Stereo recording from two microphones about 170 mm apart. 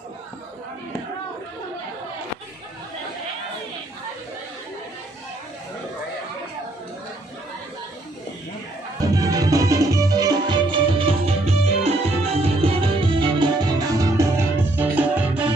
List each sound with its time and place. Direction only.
9.0 s music: 20° right (ahead or behind); by 12.7 s 35° right (ahead or behind)
13.2 s music: 25° right (ahead or behind); by 15.5 s 10° right (ahead or behind)